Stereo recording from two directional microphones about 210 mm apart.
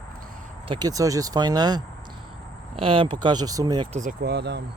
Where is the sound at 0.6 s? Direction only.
20° right (ahead or behind).